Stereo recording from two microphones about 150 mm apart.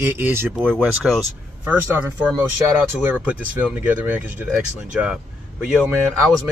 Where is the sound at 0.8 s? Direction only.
5° right (ahead or behind).